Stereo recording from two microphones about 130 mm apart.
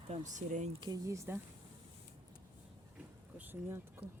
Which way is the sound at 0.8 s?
25° right (ahead or behind).